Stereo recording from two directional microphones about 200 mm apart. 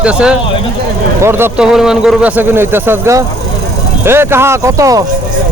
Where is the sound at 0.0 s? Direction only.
5° right (ahead or behind).